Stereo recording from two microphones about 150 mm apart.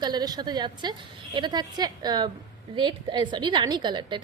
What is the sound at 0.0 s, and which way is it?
A woman's voice, 25° right (ahead or behind).